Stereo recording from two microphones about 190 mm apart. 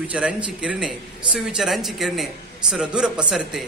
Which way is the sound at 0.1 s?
5° right (ahead or behind).